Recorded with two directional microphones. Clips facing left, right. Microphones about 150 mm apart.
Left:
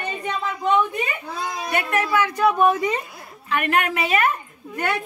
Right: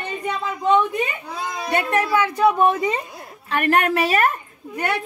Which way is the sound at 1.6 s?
30° right (ahead or behind).